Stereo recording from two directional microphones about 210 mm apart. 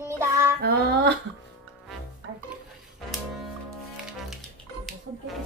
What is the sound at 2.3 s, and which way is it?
Music, 60° right (ahead or behind).